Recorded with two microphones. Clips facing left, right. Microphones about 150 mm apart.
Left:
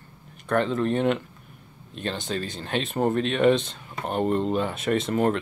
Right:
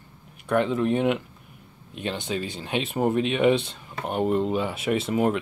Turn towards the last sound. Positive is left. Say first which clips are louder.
# even
turn(degrees=-5)  # may be behind; listen again after turning